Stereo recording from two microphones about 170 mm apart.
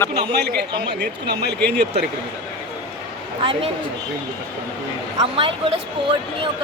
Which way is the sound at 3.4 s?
30° right (ahead or behind).